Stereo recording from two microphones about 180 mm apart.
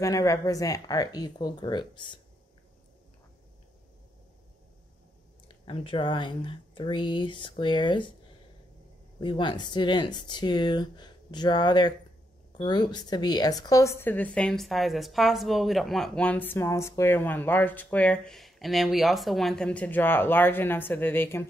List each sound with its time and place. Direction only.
0.0 s speech: 15° left (ahead or behind)
5.7 s speech: 30° left (ahead or behind)
9.2 s a woman's voice: 25° left (ahead or behind)